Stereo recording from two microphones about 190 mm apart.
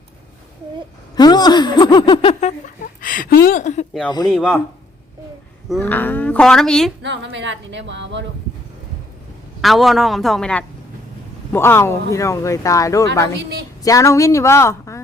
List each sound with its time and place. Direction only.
1.1 s speech: 20° left (ahead or behind)
3.0 s speech: 45° left (ahead or behind)
4.3 s a man's voice: 5° left (ahead or behind)
5.8 s speech: 10° left (ahead or behind)
7.0 s speech: 70° right (ahead or behind)
9.6 s a man's voice: centre (ahead or behind)